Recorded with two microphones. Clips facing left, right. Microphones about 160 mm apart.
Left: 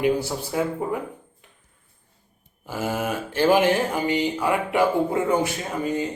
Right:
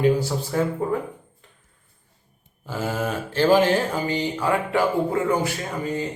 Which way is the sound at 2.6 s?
15° left (ahead or behind).